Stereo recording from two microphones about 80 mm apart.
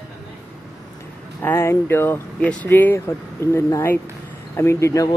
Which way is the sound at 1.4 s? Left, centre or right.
Left.